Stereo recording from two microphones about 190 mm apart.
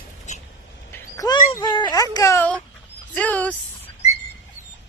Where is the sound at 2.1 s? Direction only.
15° left (ahead or behind).